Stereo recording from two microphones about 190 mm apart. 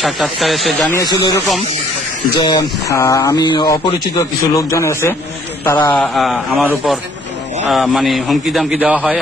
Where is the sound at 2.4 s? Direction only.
20° left (ahead or behind).